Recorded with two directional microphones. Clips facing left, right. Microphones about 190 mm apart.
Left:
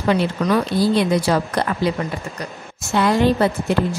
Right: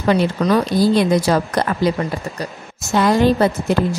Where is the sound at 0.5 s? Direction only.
45° right (ahead or behind).